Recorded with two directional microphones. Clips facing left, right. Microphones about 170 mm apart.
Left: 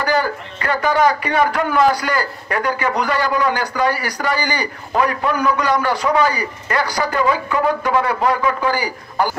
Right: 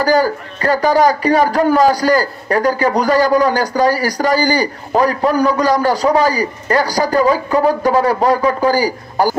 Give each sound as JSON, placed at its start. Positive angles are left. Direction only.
{"t": 0.0, "sound": "a man's voice", "side_deg": -35}